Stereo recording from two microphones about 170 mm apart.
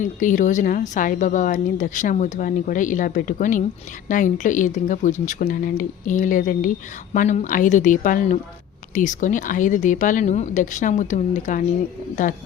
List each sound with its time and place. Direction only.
0.0 s a woman's voice: 50° left (ahead or behind)